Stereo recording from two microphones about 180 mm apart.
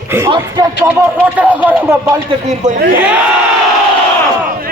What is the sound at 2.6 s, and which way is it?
Speech, 40° right (ahead or behind).